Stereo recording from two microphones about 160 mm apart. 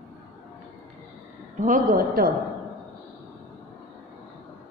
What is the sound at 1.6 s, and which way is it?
Speech, 55° right (ahead or behind).